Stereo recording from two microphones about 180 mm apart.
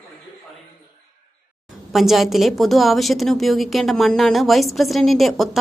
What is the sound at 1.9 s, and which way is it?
A woman's voice, centre (ahead or behind).